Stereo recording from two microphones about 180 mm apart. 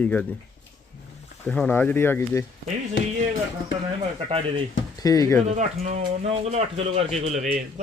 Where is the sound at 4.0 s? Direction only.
30° right (ahead or behind).